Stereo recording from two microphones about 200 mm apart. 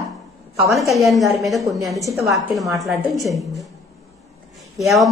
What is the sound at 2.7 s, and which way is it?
Speech, 15° right (ahead or behind).